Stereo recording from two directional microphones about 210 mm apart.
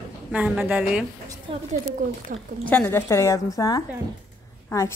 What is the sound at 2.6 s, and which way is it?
A woman's voice, 10° left (ahead or behind).